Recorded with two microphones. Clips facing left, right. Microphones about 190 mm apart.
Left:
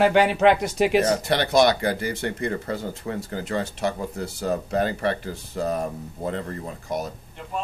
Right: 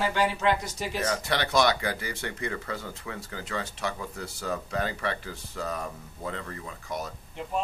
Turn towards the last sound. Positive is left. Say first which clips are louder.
# left 7 dB
turn(degrees=40)  # may be behind; listen again after turning